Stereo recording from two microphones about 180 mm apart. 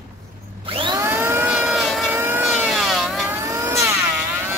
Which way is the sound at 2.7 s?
Centre (ahead or behind).